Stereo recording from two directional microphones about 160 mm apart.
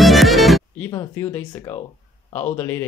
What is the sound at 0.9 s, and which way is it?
Speech, 20° left (ahead or behind).